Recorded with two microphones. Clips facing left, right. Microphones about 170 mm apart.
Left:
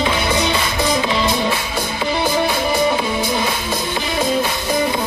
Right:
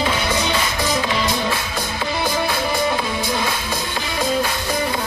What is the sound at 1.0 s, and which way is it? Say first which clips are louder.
Music: left 3 dB; 25° left (ahead or behind).